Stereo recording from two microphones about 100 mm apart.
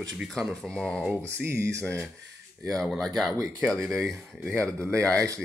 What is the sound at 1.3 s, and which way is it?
Speech, 25° right (ahead or behind).